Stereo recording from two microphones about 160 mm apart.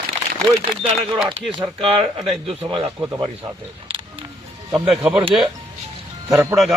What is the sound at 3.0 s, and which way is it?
Speech, 20° right (ahead or behind).